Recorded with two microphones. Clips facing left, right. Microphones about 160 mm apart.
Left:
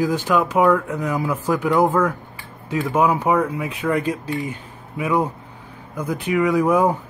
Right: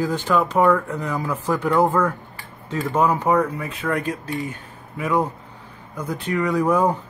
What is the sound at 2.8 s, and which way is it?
Speech, 10° left (ahead or behind).